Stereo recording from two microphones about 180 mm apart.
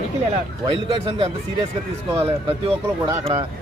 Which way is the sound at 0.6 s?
30° right (ahead or behind).